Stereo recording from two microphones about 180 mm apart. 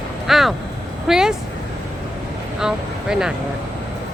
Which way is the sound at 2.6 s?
5° right (ahead or behind).